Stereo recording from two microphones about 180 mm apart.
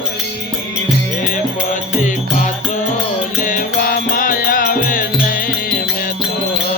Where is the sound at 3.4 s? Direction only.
50° left (ahead or behind).